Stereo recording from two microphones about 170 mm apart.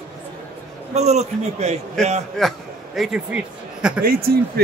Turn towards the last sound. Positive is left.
turn(degrees=-65)  # may be behind; listen again after turning